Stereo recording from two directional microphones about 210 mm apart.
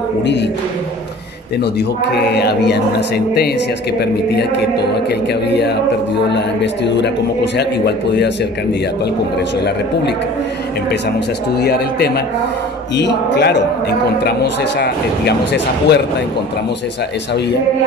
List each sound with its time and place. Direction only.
0.2 s speech: 55° left (ahead or behind)
1.6 s speech: 50° left (ahead or behind)
4.0 s speech: 50° left (ahead or behind)
9.6 s speech: 55° left (ahead or behind)